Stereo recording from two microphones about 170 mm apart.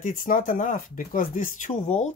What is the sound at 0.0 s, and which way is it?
Speech, 50° left (ahead or behind).